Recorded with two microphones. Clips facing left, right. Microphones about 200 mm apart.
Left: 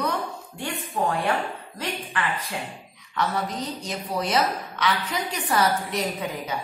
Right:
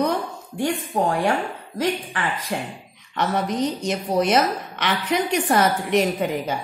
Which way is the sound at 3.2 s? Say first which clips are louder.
Right 4 dB; 80° right.